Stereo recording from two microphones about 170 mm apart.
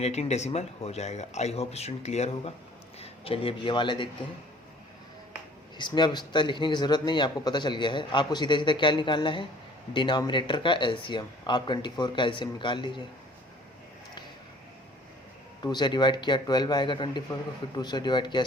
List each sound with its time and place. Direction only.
0.0 s a man's voice: 40° left (ahead or behind)
5.7 s speech: 25° left (ahead or behind)
15.6 s speech: 25° left (ahead or behind)